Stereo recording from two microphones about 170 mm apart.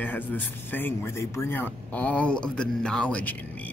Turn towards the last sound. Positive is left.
turn(degrees=10)  # may be behind; listen again after turning